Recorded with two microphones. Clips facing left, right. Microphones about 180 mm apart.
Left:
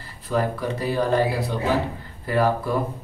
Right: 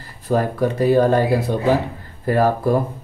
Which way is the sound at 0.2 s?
45° right (ahead or behind).